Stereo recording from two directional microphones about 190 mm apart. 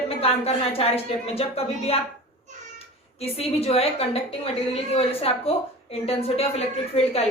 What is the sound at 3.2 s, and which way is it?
A woman's voice, 30° left (ahead or behind).